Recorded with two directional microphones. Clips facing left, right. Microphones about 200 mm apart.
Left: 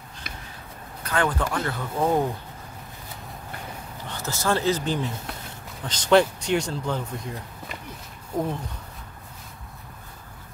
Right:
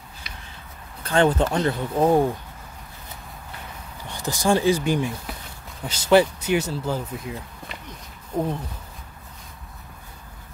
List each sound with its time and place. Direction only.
1.0 s speech: 25° right (ahead or behind)
4.0 s speech: 15° right (ahead or behind)